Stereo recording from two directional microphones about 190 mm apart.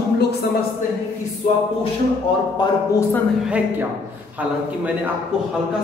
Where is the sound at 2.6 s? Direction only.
15° left (ahead or behind).